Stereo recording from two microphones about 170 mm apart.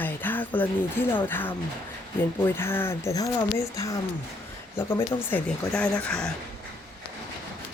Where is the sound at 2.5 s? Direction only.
15° left (ahead or behind).